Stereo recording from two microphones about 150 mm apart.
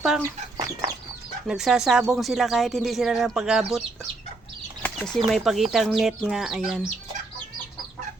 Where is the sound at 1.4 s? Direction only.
5° right (ahead or behind).